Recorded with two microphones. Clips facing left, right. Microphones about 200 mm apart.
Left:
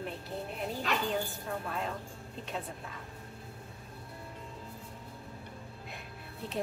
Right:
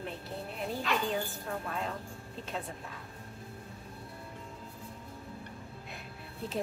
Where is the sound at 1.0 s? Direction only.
Centre (ahead or behind).